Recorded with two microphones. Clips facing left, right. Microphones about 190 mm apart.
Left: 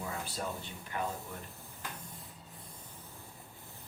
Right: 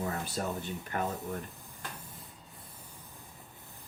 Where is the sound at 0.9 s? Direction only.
50° right (ahead or behind).